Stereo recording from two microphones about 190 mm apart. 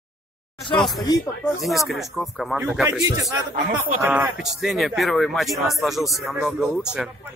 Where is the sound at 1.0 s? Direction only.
20° left (ahead or behind).